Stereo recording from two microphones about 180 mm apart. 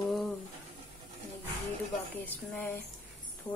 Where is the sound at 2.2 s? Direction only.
10° left (ahead or behind).